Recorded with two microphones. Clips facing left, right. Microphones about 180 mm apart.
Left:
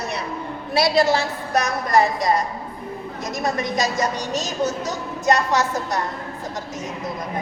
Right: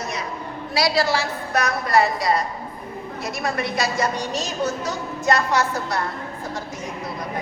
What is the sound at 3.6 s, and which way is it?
A woman's voice, 40° left (ahead or behind).